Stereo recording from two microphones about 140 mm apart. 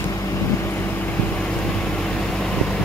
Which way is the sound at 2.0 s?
5° left (ahead or behind).